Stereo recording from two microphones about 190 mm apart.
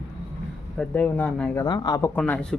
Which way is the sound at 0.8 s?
10° left (ahead or behind).